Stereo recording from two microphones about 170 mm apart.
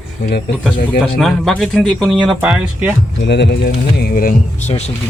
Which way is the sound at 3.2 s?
90° left.